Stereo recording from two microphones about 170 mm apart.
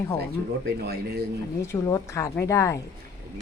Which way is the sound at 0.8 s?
65° right (ahead or behind).